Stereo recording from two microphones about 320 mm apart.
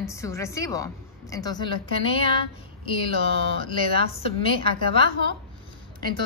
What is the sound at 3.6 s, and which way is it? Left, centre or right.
Speech, centre.